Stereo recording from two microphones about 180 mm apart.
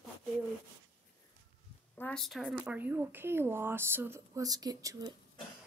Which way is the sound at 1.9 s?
5° left (ahead or behind).